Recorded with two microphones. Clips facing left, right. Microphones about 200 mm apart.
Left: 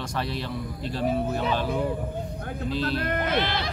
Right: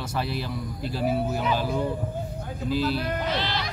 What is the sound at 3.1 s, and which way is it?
Speech, 55° left (ahead or behind).